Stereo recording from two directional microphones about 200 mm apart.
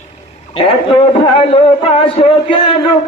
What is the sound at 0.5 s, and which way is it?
A man's voice, 25° left (ahead or behind).